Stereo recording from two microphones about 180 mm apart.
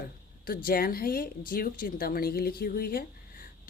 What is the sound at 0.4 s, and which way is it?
A woman's voice, 55° left (ahead or behind).